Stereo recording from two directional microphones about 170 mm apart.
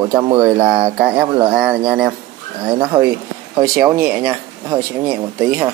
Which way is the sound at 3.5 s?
25° right (ahead or behind).